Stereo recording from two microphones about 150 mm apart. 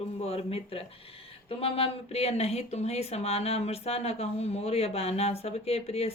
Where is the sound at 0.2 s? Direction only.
40° left (ahead or behind).